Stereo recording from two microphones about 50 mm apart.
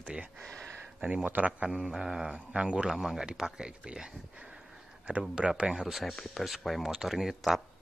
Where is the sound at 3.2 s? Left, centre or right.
Centre.